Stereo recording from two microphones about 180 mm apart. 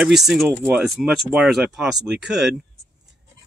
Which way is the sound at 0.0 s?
Centre (ahead or behind).